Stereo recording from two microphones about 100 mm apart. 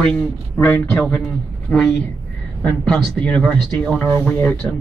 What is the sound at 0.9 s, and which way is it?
Speech, 5° left (ahead or behind).